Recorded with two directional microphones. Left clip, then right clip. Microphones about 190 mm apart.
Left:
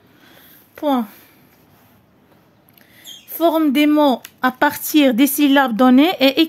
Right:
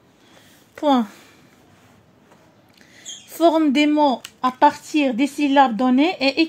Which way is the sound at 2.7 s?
Centre (ahead or behind).